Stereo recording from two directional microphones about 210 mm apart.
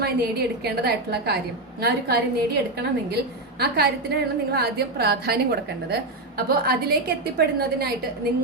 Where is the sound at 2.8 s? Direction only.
50° right (ahead or behind).